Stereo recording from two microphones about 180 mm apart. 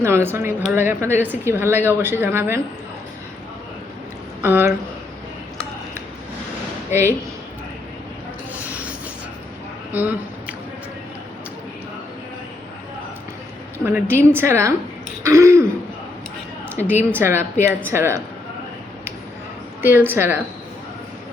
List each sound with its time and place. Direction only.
0.0 s speech: 15° right (ahead or behind)
4.4 s speech: 15° right (ahead or behind)
8.5 s train: 10° right (ahead or behind)
9.9 s speech: 10° right (ahead or behind)
13.8 s speech: 10° right (ahead or behind)
16.6 s a woman's voice: 10° right (ahead or behind)
19.8 s speech: 10° right (ahead or behind)